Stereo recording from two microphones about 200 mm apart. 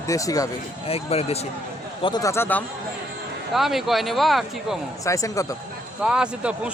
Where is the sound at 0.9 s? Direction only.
30° left (ahead or behind).